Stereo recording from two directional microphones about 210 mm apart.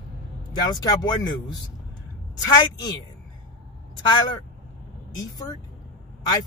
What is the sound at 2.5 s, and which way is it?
Speech, 20° left (ahead or behind).